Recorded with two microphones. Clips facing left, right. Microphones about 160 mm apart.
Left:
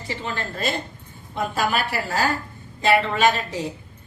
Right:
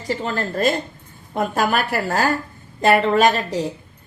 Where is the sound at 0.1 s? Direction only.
40° right (ahead or behind).